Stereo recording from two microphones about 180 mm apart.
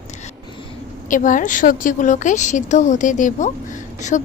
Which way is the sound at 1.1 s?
45° left (ahead or behind).